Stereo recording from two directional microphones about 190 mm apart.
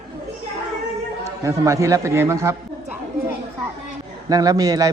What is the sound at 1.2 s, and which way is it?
A man's voice, 15° right (ahead or behind).